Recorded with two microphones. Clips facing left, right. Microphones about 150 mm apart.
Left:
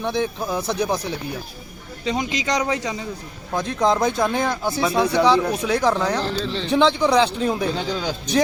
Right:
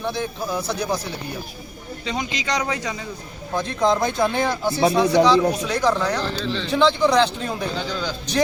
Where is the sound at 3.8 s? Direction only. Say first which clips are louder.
Even; centre (ahead or behind).